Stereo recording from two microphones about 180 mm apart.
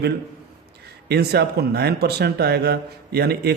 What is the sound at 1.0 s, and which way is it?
Speech, 65° right (ahead or behind).